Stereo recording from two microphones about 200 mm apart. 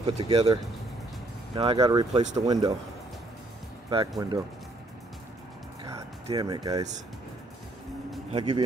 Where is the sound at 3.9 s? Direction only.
20° right (ahead or behind).